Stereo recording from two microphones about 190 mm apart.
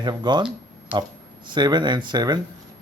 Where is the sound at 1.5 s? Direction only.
25° right (ahead or behind).